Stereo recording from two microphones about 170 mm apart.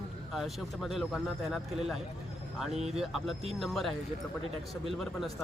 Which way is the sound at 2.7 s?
40° right (ahead or behind).